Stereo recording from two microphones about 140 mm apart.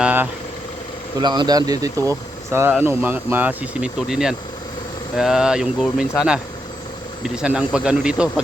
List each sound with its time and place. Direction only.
0.0 s vehicle: 10° right (ahead or behind)
1.2 s speech: 30° right (ahead or behind); by 8.3 s 5° right (ahead or behind)